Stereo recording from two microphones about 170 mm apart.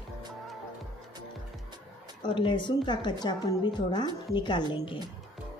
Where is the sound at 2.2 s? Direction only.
30° left (ahead or behind).